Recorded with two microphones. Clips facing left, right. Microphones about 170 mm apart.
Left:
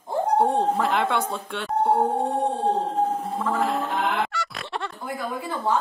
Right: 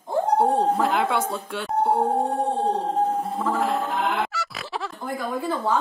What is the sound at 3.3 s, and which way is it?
Fowl, 5° right (ahead or behind).